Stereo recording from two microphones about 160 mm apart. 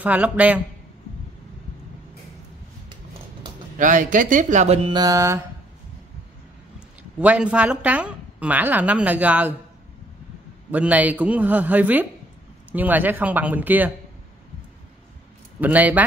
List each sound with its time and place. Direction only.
0.0 s a woman's voice: 10° right (ahead or behind)
3.7 s speech: 55° right (ahead or behind)
4.8 s mantra: 25° right (ahead or behind)
7.0 s a woman's voice: 10° right (ahead or behind)
10.7 s a woman's voice: 10° right (ahead or behind)
15.6 s a woman's voice: 10° right (ahead or behind)